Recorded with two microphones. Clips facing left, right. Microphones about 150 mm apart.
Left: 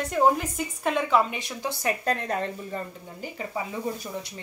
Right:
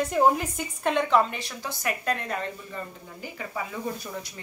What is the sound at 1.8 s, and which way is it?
Speech, 40° left (ahead or behind).